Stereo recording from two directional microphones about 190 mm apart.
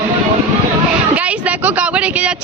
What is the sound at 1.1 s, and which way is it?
Speech, 5° right (ahead or behind).